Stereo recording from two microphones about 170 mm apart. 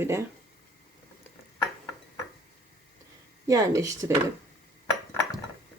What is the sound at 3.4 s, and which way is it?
Speech, 20° right (ahead or behind).